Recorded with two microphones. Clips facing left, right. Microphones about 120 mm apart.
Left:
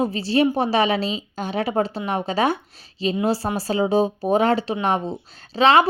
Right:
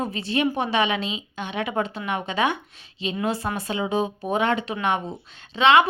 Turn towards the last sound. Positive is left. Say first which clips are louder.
# left 2 dB
turn(degrees=35)  # may be behind; listen again after turning